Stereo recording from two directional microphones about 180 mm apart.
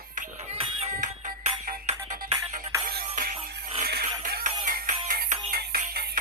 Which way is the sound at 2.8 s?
50° right (ahead or behind).